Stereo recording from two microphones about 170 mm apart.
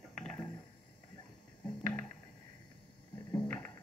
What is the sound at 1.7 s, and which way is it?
Music, 5° left (ahead or behind).